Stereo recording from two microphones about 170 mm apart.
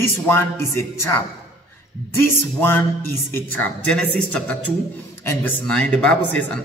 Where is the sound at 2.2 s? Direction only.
15° left (ahead or behind).